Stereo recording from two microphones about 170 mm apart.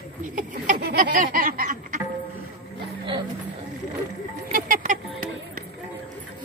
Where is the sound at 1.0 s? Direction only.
50° right (ahead or behind).